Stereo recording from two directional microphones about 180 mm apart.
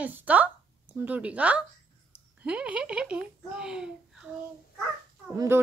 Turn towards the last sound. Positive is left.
turn(degrees=-15)  # may be behind; listen again after turning